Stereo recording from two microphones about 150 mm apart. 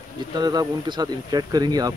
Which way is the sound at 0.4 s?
25° right (ahead or behind).